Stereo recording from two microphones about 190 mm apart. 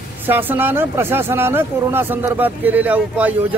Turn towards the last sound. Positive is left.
turn(degrees=-10)  # may be behind; listen again after turning